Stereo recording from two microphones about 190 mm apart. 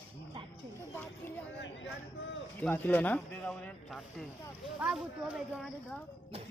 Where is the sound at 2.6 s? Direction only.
10° left (ahead or behind).